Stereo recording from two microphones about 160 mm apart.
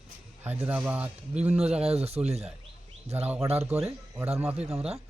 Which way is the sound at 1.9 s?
40° right (ahead or behind).